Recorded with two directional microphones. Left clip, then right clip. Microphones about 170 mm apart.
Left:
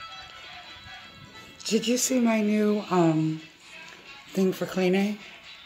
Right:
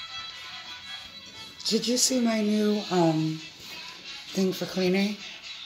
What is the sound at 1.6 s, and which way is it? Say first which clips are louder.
Speech: even; 10° left (ahead or behind).